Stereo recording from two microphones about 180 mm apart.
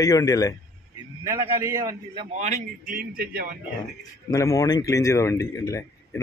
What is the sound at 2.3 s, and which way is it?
A man's voice, 40° right (ahead or behind).